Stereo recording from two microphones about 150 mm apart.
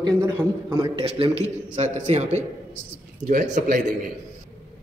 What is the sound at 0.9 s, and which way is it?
A man's voice, 40° right (ahead or behind).